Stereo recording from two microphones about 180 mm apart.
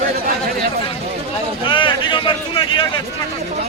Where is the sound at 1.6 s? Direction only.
25° left (ahead or behind).